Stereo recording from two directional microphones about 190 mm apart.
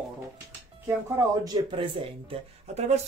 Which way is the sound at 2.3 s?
35° right (ahead or behind).